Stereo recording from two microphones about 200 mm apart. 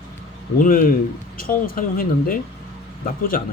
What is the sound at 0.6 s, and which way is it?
Speech, 45° left (ahead or behind).